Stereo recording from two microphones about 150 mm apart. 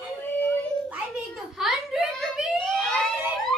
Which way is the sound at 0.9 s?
5° right (ahead or behind).